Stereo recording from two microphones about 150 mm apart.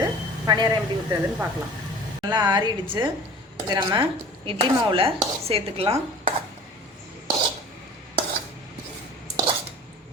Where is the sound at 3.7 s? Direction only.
30° right (ahead or behind).